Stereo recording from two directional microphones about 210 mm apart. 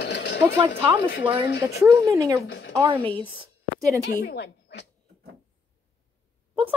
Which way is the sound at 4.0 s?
55° left (ahead or behind).